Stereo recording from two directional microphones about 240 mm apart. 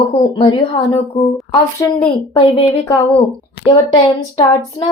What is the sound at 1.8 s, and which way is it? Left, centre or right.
Speech, centre.